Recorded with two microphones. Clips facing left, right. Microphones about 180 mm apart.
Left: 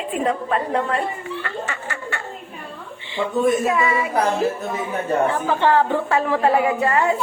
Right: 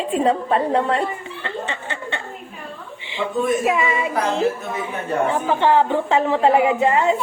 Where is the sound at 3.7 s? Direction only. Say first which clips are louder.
Even; 20° right (ahead or behind).